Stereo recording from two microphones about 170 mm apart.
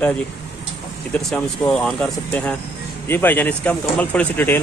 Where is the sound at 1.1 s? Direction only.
5° left (ahead or behind).